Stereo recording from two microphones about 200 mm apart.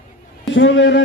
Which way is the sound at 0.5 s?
65° left (ahead or behind).